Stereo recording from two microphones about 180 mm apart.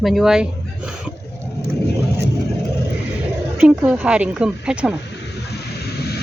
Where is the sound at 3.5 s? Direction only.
5° right (ahead or behind).